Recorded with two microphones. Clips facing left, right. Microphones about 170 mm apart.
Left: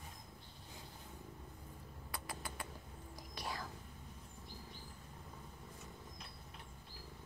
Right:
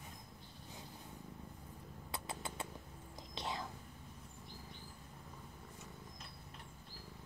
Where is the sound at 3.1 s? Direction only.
25° right (ahead or behind).